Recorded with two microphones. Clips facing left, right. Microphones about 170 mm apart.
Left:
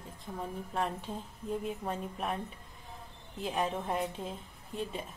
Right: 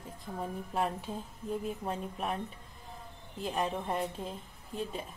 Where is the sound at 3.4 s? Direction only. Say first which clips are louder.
Even; centre (ahead or behind).